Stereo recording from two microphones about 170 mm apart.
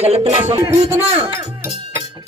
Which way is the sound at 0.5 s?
15° right (ahead or behind).